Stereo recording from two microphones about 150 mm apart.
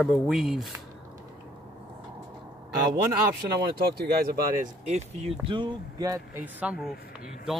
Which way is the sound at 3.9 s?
90° right.